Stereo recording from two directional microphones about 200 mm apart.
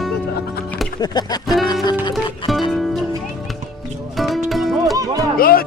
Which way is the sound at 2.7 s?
Centre (ahead or behind).